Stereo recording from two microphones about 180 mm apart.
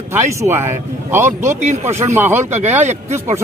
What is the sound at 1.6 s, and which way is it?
Speech, 40° right (ahead or behind).